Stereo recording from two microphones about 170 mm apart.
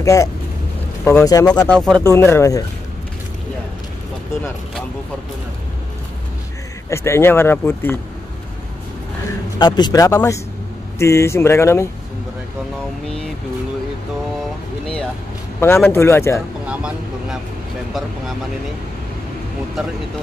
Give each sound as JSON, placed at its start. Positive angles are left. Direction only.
{"t": 0.0, "sound": "speech", "side_deg": 20}
{"t": 1.7, "sound": "speech", "side_deg": 0}
{"t": 2.0, "sound": "speech", "side_deg": 15}
{"t": 6.9, "sound": "speech", "side_deg": 15}
{"t": 9.6, "sound": "speech", "side_deg": 25}
{"t": 15.6, "sound": "speech", "side_deg": 15}
{"t": 16.6, "sound": "vehicle", "side_deg": -5}